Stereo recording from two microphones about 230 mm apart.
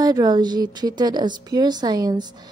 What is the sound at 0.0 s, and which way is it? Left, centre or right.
A woman's voice, centre.